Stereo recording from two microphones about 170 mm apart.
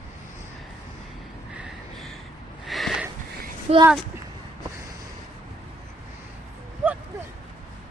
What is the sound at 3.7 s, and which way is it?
Speech, 40° right (ahead or behind).